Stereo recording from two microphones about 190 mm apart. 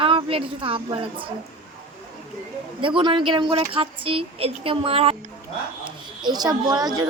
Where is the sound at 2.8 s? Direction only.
25° right (ahead or behind).